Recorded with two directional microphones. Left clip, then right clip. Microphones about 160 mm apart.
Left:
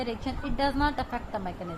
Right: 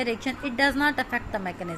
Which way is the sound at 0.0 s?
20° right (ahead or behind).